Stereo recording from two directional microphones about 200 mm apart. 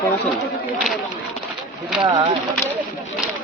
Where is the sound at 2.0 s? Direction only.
35° right (ahead or behind).